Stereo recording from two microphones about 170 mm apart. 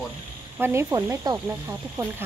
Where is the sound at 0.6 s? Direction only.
15° right (ahead or behind).